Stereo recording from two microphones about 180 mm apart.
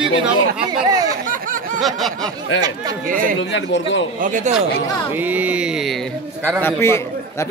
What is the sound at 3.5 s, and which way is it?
Speech, 90° left.